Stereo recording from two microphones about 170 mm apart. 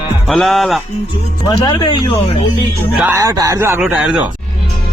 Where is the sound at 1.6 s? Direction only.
25° left (ahead or behind).